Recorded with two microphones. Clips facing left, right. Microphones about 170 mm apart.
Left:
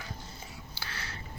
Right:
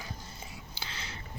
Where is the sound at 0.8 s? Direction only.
20° right (ahead or behind).